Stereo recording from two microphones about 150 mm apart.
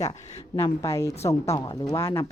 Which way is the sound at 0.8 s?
20° left (ahead or behind).